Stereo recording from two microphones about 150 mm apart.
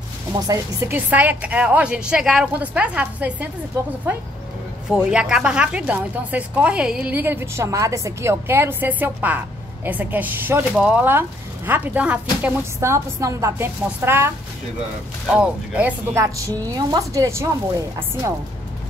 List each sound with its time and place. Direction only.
0.3 s speech: 20° right (ahead or behind)
4.9 s speech: 5° right (ahead or behind)
15.3 s a woman's voice: 10° right (ahead or behind)